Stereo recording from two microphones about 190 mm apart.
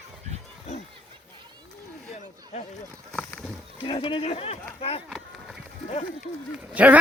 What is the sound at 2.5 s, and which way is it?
Speech, 35° left (ahead or behind).